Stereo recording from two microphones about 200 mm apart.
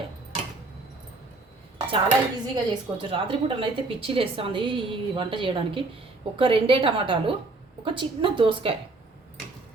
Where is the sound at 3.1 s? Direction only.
25° right (ahead or behind).